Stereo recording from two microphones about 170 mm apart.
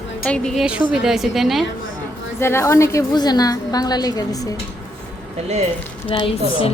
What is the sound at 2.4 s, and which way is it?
A woman's voice, 15° left (ahead or behind).